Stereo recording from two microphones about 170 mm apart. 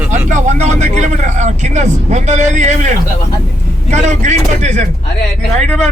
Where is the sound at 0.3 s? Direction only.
45° right (ahead or behind).